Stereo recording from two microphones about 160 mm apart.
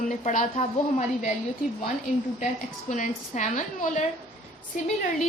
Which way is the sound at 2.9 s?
50° left (ahead or behind).